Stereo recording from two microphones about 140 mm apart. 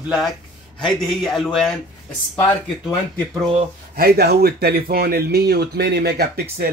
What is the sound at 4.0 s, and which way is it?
Speech, 90° right.